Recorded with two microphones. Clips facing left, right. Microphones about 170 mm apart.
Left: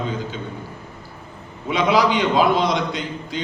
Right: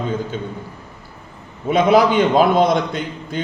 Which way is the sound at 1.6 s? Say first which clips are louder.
Right 4 dB; 50° right (ahead or behind).